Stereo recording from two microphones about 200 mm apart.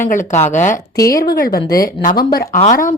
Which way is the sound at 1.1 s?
50° left (ahead or behind).